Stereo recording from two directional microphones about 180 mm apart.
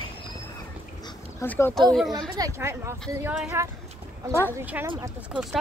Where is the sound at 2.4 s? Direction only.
15° right (ahead or behind).